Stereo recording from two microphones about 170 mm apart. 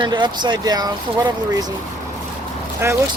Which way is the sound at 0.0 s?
25° right (ahead or behind).